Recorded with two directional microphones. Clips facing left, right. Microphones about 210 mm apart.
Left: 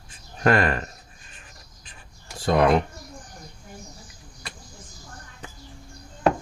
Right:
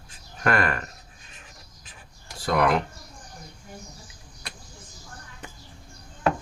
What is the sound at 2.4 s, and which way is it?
Speech, 25° left (ahead or behind).